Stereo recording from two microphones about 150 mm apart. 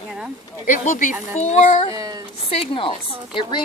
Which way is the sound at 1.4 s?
45° left (ahead or behind).